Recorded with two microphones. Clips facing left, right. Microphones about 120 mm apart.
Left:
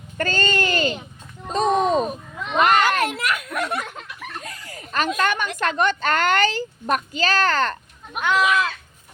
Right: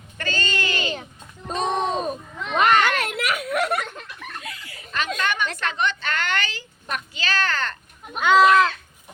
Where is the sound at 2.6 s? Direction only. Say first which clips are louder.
Left 1 dB; 40° left (ahead or behind).